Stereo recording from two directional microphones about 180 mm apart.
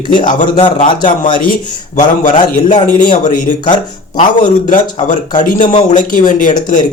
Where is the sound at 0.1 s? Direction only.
45° left (ahead or behind).